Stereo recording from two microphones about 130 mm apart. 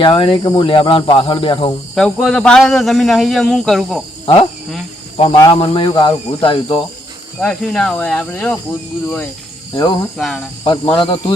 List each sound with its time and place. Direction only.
0.0 s speech: 45° left (ahead or behind)
2.0 s speech: 5° left (ahead or behind)
5.1 s cricket: 45° left (ahead or behind)
5.5 s speech: 45° left (ahead or behind)
7.3 s speech: 5° left (ahead or behind)
9.7 s speech: 35° left (ahead or behind)
10.2 s speech: centre (ahead or behind)
10.6 s speech: 40° left (ahead or behind)